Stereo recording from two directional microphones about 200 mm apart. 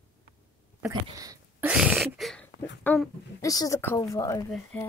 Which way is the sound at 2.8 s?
5° left (ahead or behind).